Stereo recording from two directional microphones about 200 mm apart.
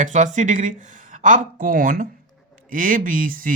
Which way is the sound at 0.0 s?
40° right (ahead or behind).